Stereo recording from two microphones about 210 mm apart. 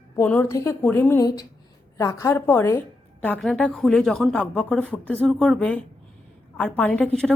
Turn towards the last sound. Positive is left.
turn(degrees=5)  # may be behind; listen again after turning